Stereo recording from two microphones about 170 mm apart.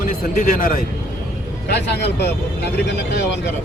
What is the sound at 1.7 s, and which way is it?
Speech, 80° left.